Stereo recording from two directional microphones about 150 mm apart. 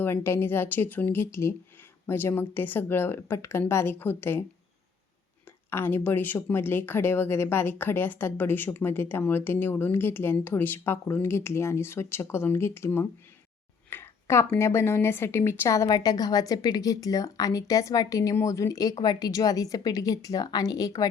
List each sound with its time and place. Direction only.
0.0 s speech: 15° left (ahead or behind)
5.7 s a woman's voice: 15° left (ahead or behind)